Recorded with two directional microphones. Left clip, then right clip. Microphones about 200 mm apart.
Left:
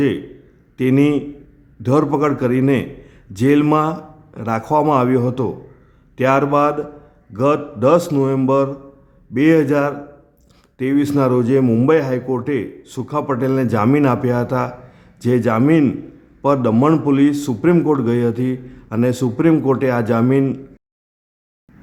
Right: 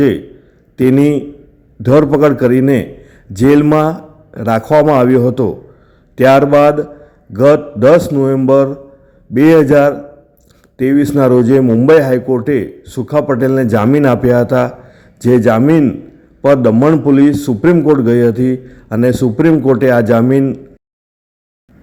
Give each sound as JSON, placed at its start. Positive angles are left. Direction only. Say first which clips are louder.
{"t": 0.8, "sound": "a man's voice", "louder": "right 5 dB", "side_deg": -20}